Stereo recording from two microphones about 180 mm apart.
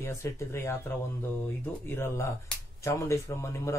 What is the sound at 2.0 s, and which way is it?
Speech, 15° left (ahead or behind).